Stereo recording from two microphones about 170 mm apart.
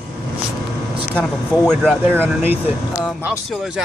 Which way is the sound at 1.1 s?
5° left (ahead or behind).